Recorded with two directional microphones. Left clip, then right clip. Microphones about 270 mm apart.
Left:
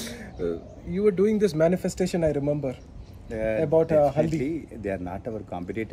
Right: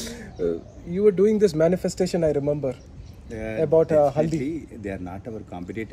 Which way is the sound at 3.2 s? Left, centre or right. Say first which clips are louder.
Left 3 dB; left.